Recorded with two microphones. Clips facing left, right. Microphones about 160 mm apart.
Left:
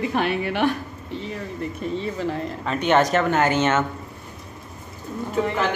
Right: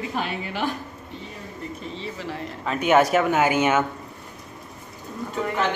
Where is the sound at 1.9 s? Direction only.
50° left (ahead or behind).